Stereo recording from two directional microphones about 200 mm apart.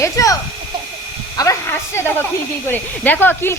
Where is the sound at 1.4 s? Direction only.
15° left (ahead or behind).